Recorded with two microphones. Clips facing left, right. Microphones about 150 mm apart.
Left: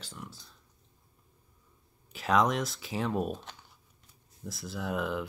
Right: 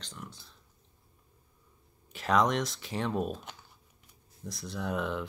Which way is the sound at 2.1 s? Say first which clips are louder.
Even; centre (ahead or behind).